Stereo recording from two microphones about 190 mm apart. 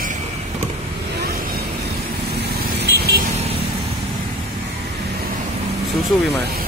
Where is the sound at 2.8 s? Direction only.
55° right (ahead or behind).